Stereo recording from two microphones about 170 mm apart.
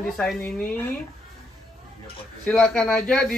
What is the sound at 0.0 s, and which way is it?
Speech, 5° left (ahead or behind).